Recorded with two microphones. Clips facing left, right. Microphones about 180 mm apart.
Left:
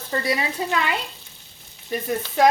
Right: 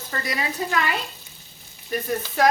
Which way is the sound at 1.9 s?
20° left (ahead or behind).